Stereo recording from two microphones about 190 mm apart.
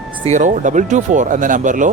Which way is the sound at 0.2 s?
40° right (ahead or behind).